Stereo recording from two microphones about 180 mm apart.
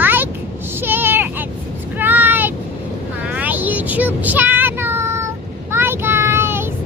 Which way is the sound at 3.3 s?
10° right (ahead or behind).